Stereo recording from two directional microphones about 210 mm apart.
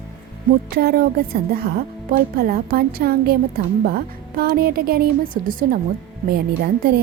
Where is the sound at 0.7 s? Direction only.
45° right (ahead or behind).